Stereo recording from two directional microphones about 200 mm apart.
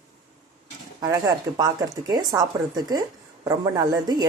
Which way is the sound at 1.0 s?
20° right (ahead or behind).